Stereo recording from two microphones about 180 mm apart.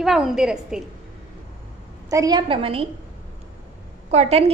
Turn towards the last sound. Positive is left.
turn(degrees=-35)  # may be behind; listen again after turning